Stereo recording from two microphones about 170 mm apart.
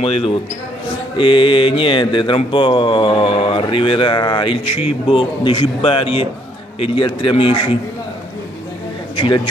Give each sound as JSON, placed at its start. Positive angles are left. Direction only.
{"t": 0.0, "sound": "speech", "side_deg": 35}
{"t": 1.1, "sound": "mantra", "side_deg": 30}
{"t": 9.1, "sound": "speech", "side_deg": 30}